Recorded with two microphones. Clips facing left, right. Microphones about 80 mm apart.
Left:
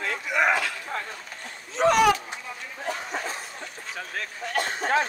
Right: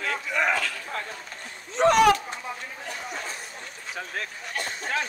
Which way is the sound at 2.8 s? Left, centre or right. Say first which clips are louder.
Left 5 dB; left.